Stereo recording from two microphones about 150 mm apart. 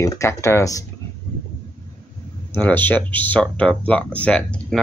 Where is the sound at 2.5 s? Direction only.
10° left (ahead or behind).